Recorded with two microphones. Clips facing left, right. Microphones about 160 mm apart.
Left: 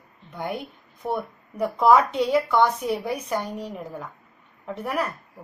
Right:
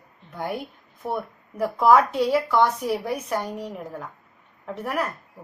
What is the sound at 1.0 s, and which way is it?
A woman's voice, centre (ahead or behind).